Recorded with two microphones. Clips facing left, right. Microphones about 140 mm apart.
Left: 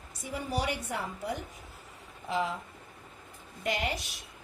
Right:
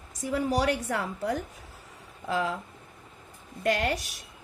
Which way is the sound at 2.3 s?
65° right (ahead or behind).